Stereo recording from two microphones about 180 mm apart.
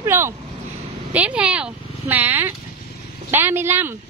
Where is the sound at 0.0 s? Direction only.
15° right (ahead or behind).